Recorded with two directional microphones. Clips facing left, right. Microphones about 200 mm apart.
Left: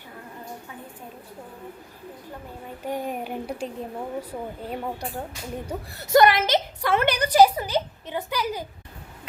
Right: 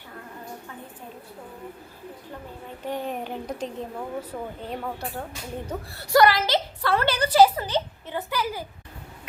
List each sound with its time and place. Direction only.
2.8 s a woman's voice: 10° left (ahead or behind)